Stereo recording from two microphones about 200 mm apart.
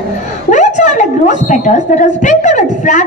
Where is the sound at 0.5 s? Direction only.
40° left (ahead or behind).